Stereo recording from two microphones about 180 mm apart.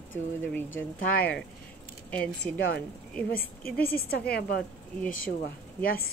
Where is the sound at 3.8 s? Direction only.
55° left (ahead or behind).